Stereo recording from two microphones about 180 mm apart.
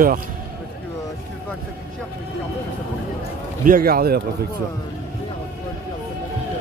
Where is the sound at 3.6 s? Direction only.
55° right (ahead or behind).